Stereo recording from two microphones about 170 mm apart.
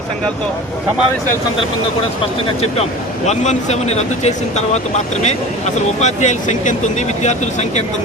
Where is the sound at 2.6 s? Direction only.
40° left (ahead or behind).